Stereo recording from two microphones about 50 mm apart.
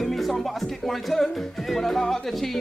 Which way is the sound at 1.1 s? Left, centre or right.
Centre.